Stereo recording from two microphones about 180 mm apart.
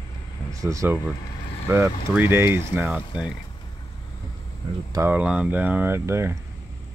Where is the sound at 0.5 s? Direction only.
15° right (ahead or behind).